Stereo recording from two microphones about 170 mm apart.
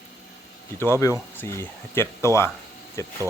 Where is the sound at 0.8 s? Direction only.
15° left (ahead or behind).